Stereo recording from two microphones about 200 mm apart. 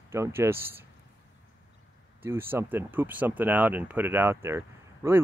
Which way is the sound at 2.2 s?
10° right (ahead or behind).